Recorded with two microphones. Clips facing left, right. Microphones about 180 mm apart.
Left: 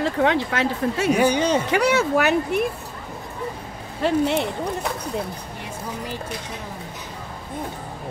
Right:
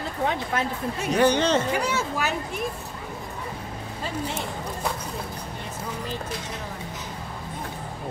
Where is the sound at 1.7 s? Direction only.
70° left (ahead or behind).